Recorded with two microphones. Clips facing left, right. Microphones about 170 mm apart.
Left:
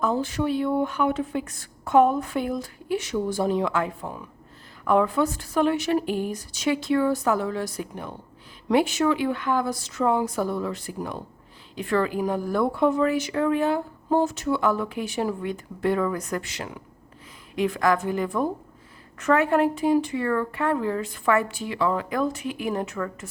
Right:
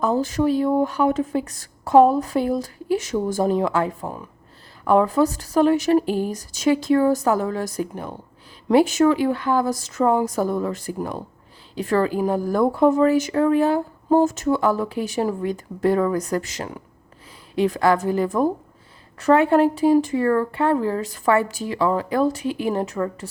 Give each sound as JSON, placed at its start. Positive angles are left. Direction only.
{"t": 0.0, "sound": "a woman's voice", "side_deg": -40}